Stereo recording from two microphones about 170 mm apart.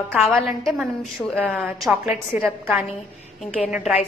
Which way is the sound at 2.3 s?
10° right (ahead or behind).